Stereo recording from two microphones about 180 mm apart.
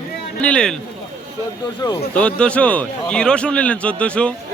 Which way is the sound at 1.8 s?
20° left (ahead or behind).